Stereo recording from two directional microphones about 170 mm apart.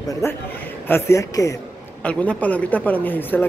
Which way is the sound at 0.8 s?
15° left (ahead or behind).